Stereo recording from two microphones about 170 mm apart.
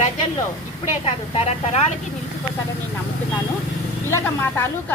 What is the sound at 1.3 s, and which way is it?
Speech, 40° left (ahead or behind).